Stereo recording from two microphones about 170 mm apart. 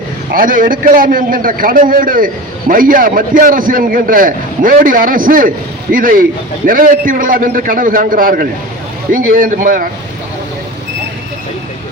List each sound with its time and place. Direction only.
0.3 s a man's voice: 55° right (ahead or behind)